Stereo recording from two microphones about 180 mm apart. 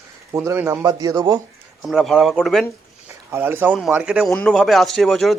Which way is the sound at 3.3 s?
10° right (ahead or behind).